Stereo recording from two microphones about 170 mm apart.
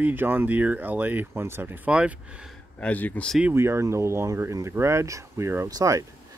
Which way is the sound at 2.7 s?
10° left (ahead or behind).